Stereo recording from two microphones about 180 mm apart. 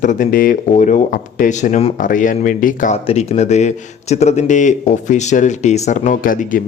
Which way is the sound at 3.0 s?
35° left (ahead or behind).